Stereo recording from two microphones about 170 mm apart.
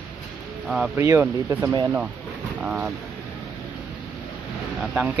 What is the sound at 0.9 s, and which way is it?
Speech, 15° right (ahead or behind).